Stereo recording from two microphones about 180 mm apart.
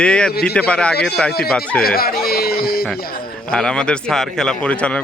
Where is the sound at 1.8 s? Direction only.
55° left (ahead or behind).